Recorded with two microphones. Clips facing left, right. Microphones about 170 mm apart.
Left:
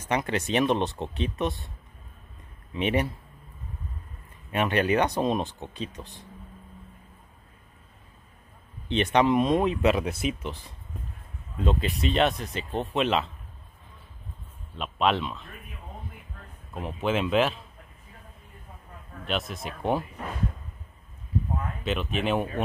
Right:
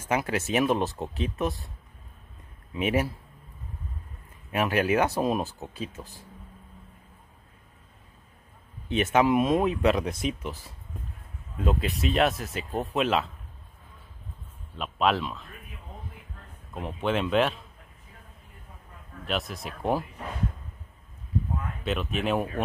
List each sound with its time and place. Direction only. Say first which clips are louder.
0.0 s speech: even; 5° right (ahead or behind)
2.7 s speech: even; 5° right (ahead or behind)
4.5 s speech: even; 5° right (ahead or behind)
8.8 s speech: even; 5° right (ahead or behind)
14.8 s speech: even; centre (ahead or behind)
16.7 s speech: even; centre (ahead or behind)
19.2 s speech: even; centre (ahead or behind)
21.8 s speech: even; centre (ahead or behind)